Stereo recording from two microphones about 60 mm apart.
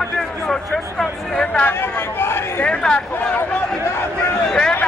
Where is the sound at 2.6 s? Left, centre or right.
Centre.